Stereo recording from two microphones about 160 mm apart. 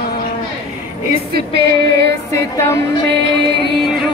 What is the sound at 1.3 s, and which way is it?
Music, 90° right.